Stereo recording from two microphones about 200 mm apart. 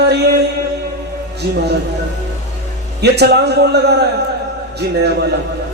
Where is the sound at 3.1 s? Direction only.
55° right (ahead or behind).